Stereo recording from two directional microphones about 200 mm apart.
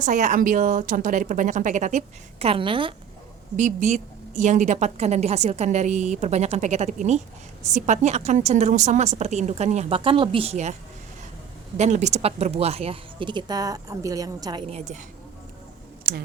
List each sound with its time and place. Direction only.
0.0 s a woman's voice: 40° right (ahead or behind)
3.6 s a woman's voice: 35° right (ahead or behind)
11.8 s speech: 35° right (ahead or behind); by 14.6 s 20° right (ahead or behind)
14.7 s a woman's voice: 35° right (ahead or behind)